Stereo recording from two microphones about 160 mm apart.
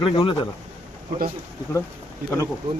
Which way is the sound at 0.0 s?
35° left (ahead or behind).